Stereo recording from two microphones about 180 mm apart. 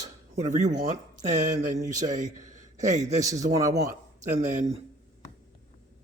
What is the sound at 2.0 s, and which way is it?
A man's voice, 45° right (ahead or behind).